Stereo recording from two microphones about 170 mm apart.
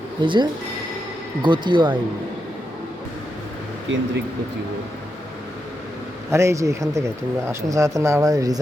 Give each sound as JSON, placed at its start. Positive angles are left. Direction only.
{"t": 0.2, "sound": "speech", "side_deg": -30}
{"t": 3.9, "sound": "speech", "side_deg": -90}
{"t": 6.3, "sound": "speech", "side_deg": -15}